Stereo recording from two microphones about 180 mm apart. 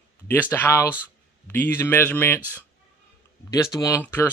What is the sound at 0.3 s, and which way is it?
A man's voice, 10° left (ahead or behind).